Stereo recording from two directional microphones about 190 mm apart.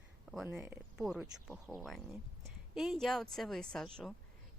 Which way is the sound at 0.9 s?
5° right (ahead or behind).